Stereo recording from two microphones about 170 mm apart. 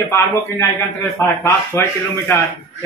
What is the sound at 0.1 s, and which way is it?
A man's voice, 15° left (ahead or behind).